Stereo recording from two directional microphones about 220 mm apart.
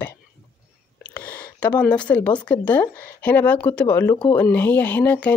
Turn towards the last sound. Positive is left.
turn(degrees=5)  # may be behind; listen again after turning